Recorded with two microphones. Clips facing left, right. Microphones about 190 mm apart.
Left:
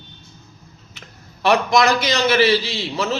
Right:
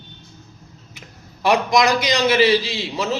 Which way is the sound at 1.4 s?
15° right (ahead or behind).